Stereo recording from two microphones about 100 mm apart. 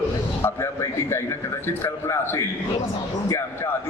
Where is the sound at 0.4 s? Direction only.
25° left (ahead or behind).